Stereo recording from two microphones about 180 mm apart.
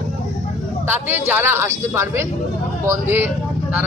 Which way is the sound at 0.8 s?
10° right (ahead or behind).